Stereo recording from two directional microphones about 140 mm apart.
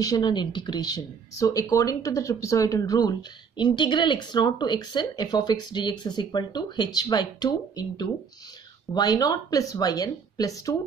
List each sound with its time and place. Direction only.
0.0 s speech: 30° left (ahead or behind)